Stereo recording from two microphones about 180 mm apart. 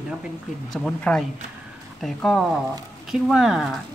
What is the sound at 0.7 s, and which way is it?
Speech, 5° left (ahead or behind).